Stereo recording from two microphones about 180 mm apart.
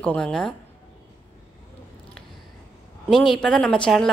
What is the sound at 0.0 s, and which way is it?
Speech, 5° left (ahead or behind).